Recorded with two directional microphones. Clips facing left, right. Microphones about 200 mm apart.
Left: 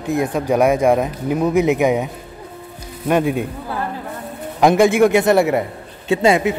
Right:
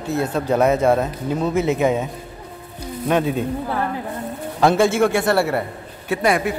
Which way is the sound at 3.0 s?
10° left (ahead or behind).